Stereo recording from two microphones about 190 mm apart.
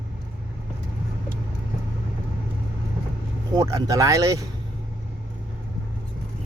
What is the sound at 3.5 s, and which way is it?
Speech, 20° right (ahead or behind).